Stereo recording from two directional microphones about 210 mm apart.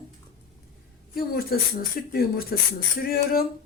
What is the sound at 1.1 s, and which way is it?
Speech, 45° left (ahead or behind).